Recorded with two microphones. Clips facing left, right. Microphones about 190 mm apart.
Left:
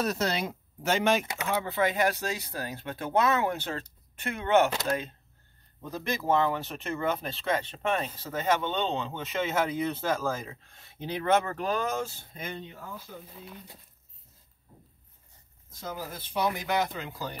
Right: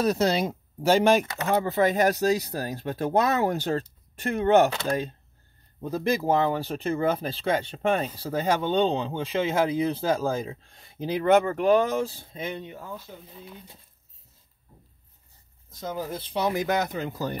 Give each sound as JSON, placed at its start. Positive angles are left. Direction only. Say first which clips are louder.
{"t": 0.0, "sound": "speech", "louder": "right 6 dB", "side_deg": -30}
{"t": 5.8, "sound": "speech", "louder": "right 7 dB", "side_deg": -30}
{"t": 16.4, "sound": "speech", "louder": "right 4 dB", "side_deg": -45}